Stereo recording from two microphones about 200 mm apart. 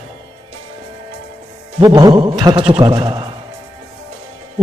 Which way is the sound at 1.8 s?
20° right (ahead or behind).